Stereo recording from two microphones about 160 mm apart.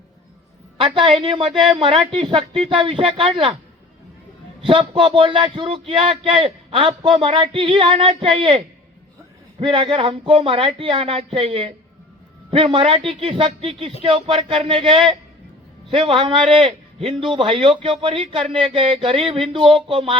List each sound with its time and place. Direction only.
0.8 s a woman's voice: 35° right (ahead or behind)
4.6 s a man's voice: 35° right (ahead or behind)